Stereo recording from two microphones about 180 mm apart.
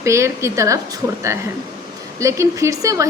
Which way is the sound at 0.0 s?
15° right (ahead or behind).